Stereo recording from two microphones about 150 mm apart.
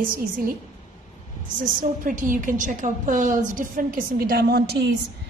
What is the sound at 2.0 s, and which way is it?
A woman's voice, 65° right (ahead or behind).